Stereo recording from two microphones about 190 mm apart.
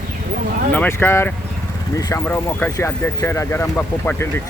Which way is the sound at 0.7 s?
10° left (ahead or behind).